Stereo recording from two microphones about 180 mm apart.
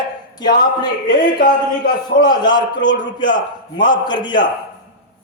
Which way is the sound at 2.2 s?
25° left (ahead or behind).